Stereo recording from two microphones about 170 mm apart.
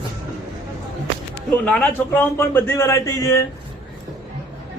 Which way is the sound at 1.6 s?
10° left (ahead or behind).